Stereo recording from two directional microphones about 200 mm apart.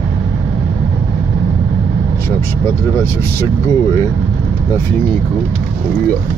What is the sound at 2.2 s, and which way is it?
Speech, 15° left (ahead or behind).